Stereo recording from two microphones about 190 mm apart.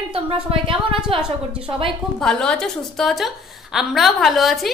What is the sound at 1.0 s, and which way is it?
A woman's voice, 5° right (ahead or behind).